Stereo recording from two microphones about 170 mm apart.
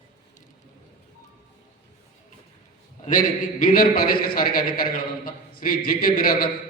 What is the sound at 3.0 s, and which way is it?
Speech, 50° left (ahead or behind).